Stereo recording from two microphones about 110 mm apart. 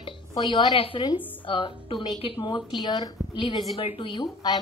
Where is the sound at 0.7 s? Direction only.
55° left (ahead or behind); by 3.6 s 40° left (ahead or behind).